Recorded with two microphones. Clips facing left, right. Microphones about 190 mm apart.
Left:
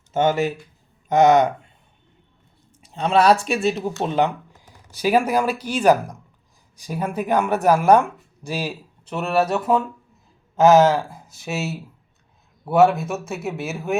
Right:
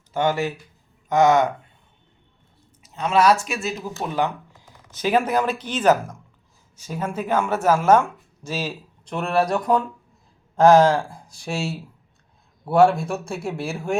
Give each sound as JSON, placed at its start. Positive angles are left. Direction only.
{"t": 0.1, "sound": "speech", "side_deg": 20}
{"t": 2.8, "sound": "speech", "side_deg": 30}
{"t": 4.9, "sound": "speech", "side_deg": 10}
{"t": 9.1, "sound": "speech", "side_deg": 5}